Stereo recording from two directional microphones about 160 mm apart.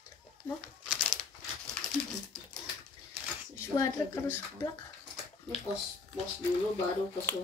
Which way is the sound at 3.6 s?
15° left (ahead or behind).